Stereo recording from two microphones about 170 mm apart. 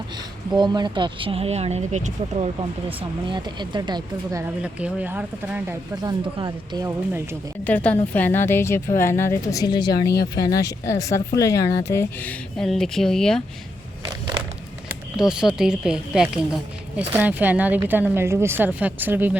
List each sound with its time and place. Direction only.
0.5 s speech: 25° right (ahead or behind); by 2.5 s 45° right (ahead or behind)
3.2 s speech: 25° right (ahead or behind)
4.6 s speech: 10° right (ahead or behind)
6.0 s speech: 25° right (ahead or behind)
7.6 s speech: 10° left (ahead or behind)
15.5 s speech: 5° right (ahead or behind)